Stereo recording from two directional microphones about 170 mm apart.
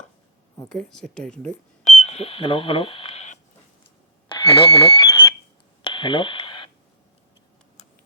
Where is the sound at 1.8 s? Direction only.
40° left (ahead or behind).